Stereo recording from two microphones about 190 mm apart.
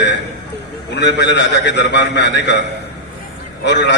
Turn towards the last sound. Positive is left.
turn(degrees=65)  # may be behind; listen again after turning